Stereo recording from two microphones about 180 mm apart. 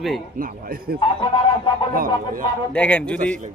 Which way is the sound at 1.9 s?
50° right (ahead or behind).